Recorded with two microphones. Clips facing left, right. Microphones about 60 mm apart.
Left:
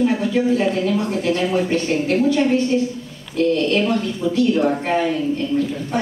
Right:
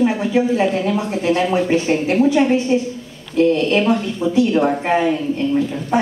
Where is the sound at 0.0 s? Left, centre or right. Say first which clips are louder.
Right 1 dB; centre.